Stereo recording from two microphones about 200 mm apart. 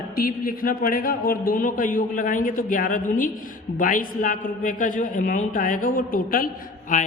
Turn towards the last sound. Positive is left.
turn(degrees=40)  # may be behind; listen again after turning